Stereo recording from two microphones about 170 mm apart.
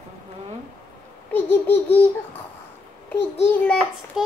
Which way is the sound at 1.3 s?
10° left (ahead or behind).